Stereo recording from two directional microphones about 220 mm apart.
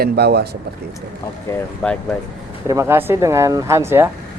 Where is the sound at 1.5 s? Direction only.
5° left (ahead or behind).